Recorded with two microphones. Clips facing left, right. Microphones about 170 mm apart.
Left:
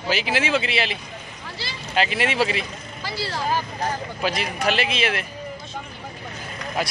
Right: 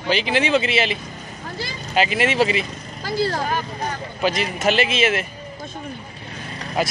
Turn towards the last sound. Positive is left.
turn(degrees=0)  # may be behind; listen again after turning